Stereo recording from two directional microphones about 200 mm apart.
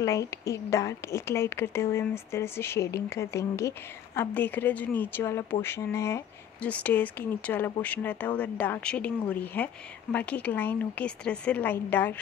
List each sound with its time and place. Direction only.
0.0 s a woman's voice: 15° left (ahead or behind)